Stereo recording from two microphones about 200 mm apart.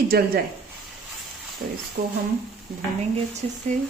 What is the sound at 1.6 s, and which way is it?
Speech, 45° right (ahead or behind).